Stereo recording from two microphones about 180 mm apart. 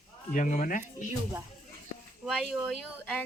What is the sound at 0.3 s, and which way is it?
Speech, 45° left (ahead or behind).